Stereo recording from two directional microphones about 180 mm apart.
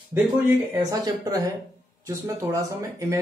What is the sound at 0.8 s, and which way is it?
Speech, 20° right (ahead or behind).